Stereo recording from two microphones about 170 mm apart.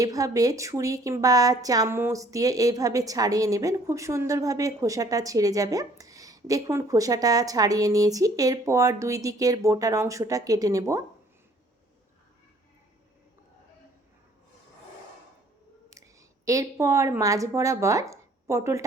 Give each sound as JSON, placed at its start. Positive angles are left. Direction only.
{"t": 0.0, "sound": "a woman's voice", "side_deg": -20}
{"t": 16.5, "sound": "speech", "side_deg": -20}